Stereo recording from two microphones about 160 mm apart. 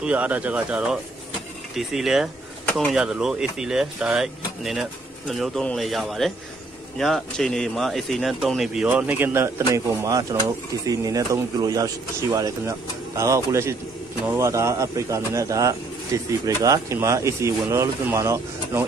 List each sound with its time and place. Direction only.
0.0 s speech: 10° right (ahead or behind)
2.6 s a sound: 10° left (ahead or behind)
2.9 s speech: 5° right (ahead or behind)
10.9 s speech: 20° right (ahead or behind)